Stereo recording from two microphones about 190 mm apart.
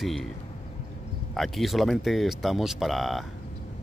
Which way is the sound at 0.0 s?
Centre (ahead or behind).